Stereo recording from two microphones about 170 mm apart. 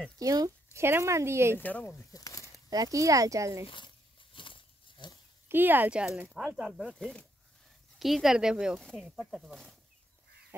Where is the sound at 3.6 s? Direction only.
30° left (ahead or behind).